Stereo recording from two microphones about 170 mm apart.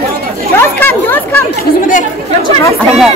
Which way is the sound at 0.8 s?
10° left (ahead or behind).